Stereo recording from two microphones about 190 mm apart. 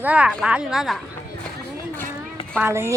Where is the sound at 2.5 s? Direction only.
10° right (ahead or behind).